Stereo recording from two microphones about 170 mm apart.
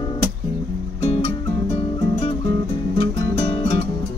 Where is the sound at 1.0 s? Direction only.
40° left (ahead or behind).